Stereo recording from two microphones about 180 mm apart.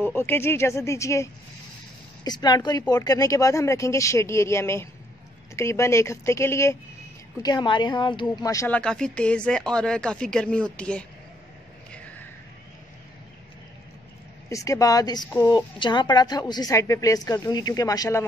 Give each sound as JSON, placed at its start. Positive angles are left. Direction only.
{"t": 0.0, "sound": "a woman's voice", "side_deg": 10}
{"t": 8.6, "sound": "speech", "side_deg": 5}
{"t": 14.5, "sound": "a woman's voice", "side_deg": 20}